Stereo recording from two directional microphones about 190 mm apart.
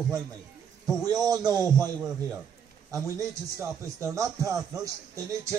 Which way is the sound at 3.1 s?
15° right (ahead or behind).